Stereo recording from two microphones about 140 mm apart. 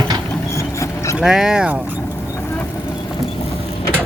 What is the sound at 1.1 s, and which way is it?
Speech, 5° right (ahead or behind).